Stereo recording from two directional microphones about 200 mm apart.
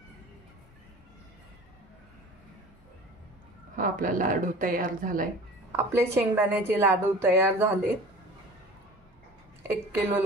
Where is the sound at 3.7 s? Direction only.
45° right (ahead or behind).